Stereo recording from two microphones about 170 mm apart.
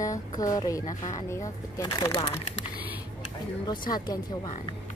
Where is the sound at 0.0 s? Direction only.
20° left (ahead or behind).